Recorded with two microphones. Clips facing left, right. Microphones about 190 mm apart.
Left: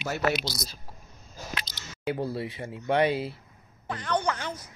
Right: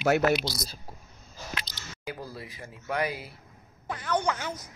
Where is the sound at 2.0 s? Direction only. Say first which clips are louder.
Left 9 dB; 30° left (ahead or behind).